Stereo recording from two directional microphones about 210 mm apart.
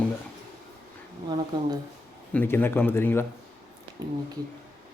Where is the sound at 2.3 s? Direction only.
10° left (ahead or behind).